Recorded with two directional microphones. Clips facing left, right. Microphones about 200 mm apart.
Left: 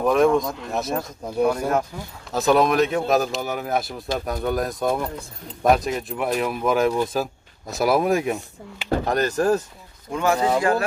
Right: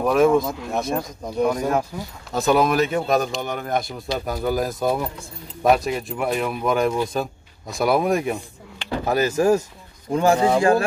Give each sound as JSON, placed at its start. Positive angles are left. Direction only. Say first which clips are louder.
{"t": 0.0, "sound": "speech", "louder": "right 1 dB", "side_deg": 0}
{"t": 1.9, "sound": "speech", "louder": "right 1 dB", "side_deg": -5}
{"t": 10.1, "sound": "speech", "louder": "right 3 dB", "side_deg": -30}